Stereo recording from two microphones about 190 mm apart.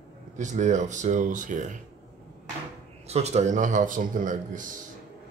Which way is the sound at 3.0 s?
35° right (ahead or behind).